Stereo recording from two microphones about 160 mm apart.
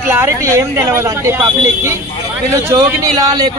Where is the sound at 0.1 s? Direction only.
15° right (ahead or behind).